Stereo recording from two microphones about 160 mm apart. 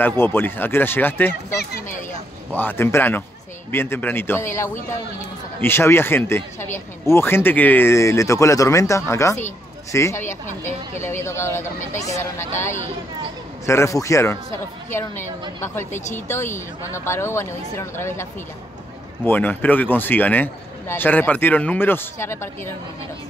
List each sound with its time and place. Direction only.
0.2 s speech: 15° left (ahead or behind)
13.7 s speech: 15° left (ahead or behind)
15.6 s speech: 15° left (ahead or behind)
19.2 s speech: 10° left (ahead or behind)